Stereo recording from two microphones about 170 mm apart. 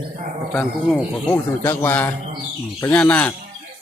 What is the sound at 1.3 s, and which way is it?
Speech, 15° left (ahead or behind).